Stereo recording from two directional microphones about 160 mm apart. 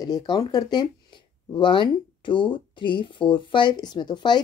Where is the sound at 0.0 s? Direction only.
25° left (ahead or behind).